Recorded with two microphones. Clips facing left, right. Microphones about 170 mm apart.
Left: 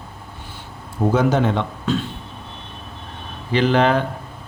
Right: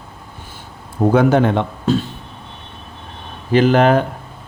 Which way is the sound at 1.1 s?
60° right (ahead or behind).